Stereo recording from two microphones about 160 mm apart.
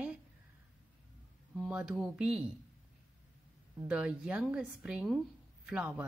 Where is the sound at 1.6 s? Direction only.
5° right (ahead or behind).